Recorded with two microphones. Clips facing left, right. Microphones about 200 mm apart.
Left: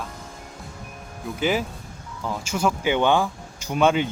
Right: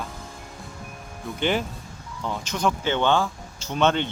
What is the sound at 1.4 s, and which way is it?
Speech, 5° left (ahead or behind).